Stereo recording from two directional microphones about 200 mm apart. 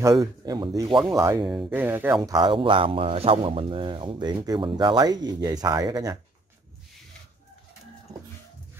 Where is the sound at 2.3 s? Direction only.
25° right (ahead or behind).